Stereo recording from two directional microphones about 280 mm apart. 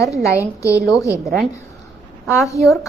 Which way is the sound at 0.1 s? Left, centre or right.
Centre.